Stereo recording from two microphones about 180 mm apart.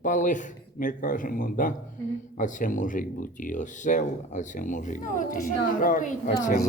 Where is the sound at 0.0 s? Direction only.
45° left (ahead or behind).